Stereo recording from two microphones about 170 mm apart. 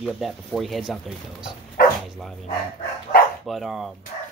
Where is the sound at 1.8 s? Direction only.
60° left (ahead or behind).